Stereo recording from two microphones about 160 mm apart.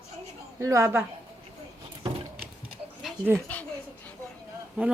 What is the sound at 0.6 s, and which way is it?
Speech, 20° right (ahead or behind).